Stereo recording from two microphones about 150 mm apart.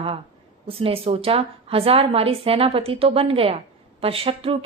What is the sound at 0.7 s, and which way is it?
A woman's voice, 40° right (ahead or behind).